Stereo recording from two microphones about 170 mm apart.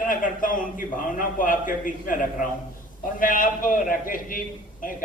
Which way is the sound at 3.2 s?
50° left (ahead or behind).